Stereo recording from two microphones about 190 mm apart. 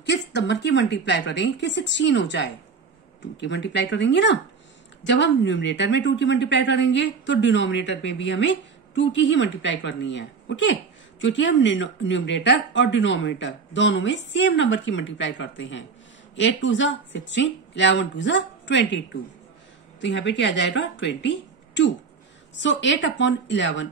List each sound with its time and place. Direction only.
0.0 s a woman's voice: 65° left (ahead or behind)